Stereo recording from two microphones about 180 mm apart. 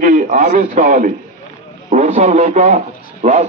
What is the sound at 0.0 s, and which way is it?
A man's voice, 45° right (ahead or behind).